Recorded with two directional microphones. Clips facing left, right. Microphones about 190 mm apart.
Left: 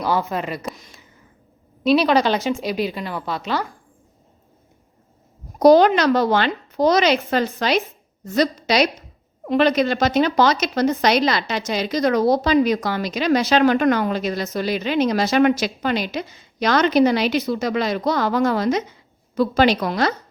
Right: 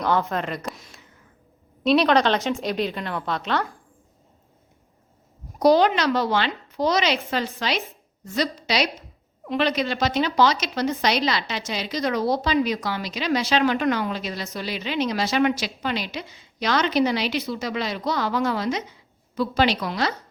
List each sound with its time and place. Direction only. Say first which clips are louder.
0.0 s speech: left 1 dB; 5° left (ahead or behind)
5.5 s a woman's voice: left 5 dB; 45° left (ahead or behind)